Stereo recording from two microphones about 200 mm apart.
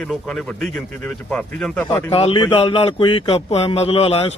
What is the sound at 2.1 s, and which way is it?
Speech, 25° left (ahead or behind).